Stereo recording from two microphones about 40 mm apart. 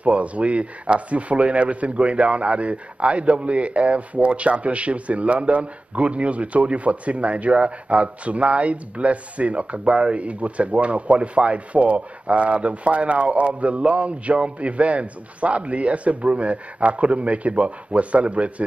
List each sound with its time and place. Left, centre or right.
0.0 s speech: right